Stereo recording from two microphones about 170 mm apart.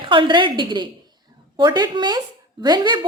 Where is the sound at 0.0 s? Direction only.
30° right (ahead or behind).